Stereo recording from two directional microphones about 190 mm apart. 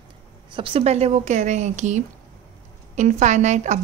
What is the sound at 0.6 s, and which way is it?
Speech, 30° right (ahead or behind).